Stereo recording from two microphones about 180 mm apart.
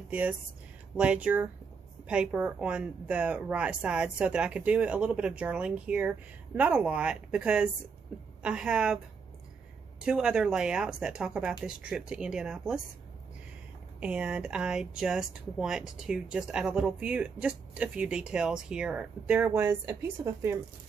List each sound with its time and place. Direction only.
0.1 s speech: 10° right (ahead or behind)
10.0 s speech: 5° right (ahead or behind)
13.9 s speech: 5° right (ahead or behind)